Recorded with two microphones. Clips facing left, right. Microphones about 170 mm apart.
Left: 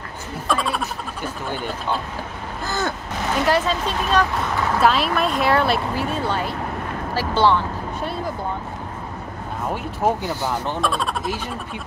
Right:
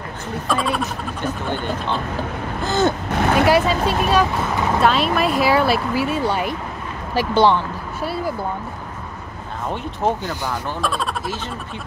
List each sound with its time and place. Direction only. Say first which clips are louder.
0.5 s speech: right 1 dB; centre (ahead or behind)
2.6 s gasp: right 7 dB; 20° right (ahead or behind)
3.2 s vehicle: right 5 dB; 60° right (ahead or behind)
3.4 s speech: right 4 dB; 10° right (ahead or behind)
10.0 s speech: left 1 dB; 10° left (ahead or behind)